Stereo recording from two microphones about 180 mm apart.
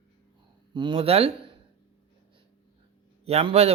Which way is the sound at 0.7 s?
25° right (ahead or behind).